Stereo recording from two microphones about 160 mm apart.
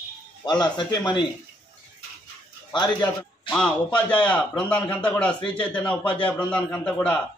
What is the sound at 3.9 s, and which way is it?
A man's voice, 5° left (ahead or behind).